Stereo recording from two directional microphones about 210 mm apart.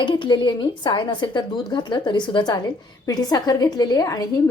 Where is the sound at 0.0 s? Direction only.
20° left (ahead or behind).